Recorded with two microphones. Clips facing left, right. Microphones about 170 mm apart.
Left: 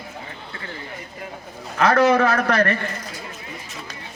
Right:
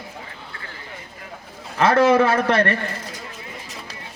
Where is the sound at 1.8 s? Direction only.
25° right (ahead or behind).